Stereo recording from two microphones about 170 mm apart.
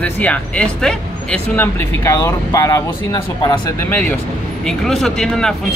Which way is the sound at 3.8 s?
10° left (ahead or behind).